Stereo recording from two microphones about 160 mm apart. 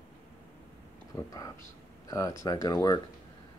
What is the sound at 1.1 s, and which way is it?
Speech, 20° left (ahead or behind).